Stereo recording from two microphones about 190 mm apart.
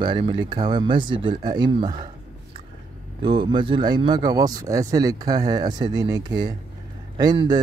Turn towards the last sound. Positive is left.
turn(degrees=-25)  # may be behind; listen again after turning